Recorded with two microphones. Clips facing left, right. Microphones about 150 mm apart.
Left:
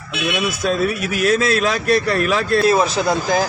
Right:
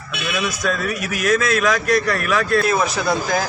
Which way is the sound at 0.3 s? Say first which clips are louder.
Left 2 dB; 25° left (ahead or behind).